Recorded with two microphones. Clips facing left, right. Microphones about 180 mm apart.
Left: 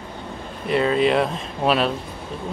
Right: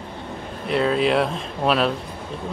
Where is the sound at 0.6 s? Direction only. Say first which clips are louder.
Left 1 dB; centre (ahead or behind).